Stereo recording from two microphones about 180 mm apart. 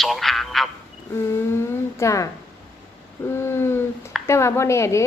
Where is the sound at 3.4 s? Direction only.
15° left (ahead or behind).